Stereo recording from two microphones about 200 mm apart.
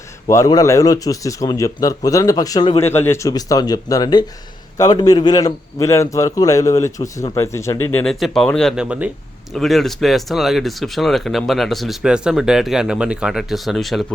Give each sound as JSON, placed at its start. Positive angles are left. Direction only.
{"t": 0.3, "sound": "a man's voice", "side_deg": 15}